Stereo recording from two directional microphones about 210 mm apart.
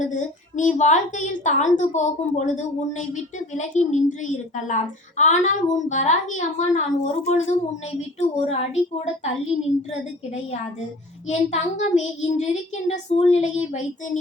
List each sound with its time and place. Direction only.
0.0 s a woman's voice: 35° left (ahead or behind)
11.3 s a woman's voice: 30° left (ahead or behind)